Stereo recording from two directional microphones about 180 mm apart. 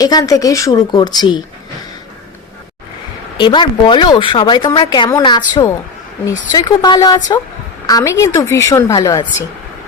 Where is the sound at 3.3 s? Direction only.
25° left (ahead or behind).